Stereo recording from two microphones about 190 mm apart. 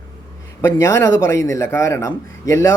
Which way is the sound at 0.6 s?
15° left (ahead or behind).